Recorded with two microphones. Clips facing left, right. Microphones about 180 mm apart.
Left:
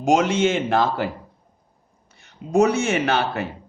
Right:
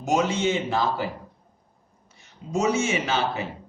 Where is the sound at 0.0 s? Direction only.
90° left.